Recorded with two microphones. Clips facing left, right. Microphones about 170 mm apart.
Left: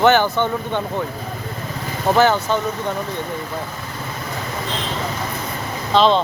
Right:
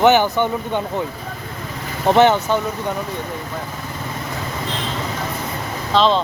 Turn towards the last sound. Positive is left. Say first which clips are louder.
# left 1 dB
turn(degrees=0)  # may be behind; listen again after turning